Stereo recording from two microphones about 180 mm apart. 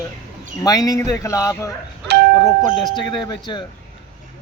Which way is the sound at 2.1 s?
70° right (ahead or behind).